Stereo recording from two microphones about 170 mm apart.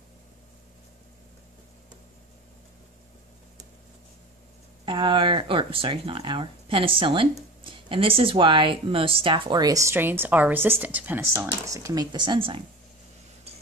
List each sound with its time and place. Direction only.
4.8 s speech: 30° right (ahead or behind)